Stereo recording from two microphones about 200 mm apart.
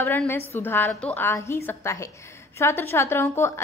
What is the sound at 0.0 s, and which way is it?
A woman's voice, 10° left (ahead or behind).